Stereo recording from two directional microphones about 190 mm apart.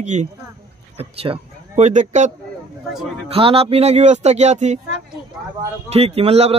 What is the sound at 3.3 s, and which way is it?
Speech, 30° right (ahead or behind).